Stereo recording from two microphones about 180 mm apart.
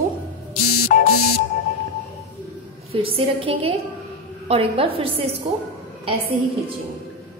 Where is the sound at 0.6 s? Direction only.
50° left (ahead or behind).